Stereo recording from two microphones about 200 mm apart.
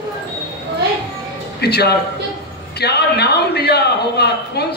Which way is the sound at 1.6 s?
55° left (ahead or behind).